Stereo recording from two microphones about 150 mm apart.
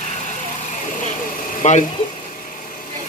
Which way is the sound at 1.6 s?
55° left (ahead or behind).